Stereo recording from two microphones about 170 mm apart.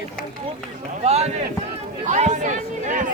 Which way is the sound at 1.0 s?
40° right (ahead or behind).